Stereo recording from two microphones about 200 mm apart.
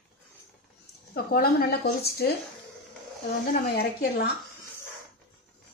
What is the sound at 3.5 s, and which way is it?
Speech, 50° left (ahead or behind).